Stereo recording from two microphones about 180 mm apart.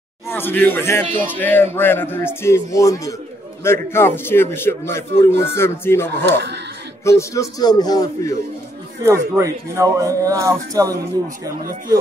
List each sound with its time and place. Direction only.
0.3 s speech: 10° left (ahead or behind)
9.0 s speech: 15° right (ahead or behind)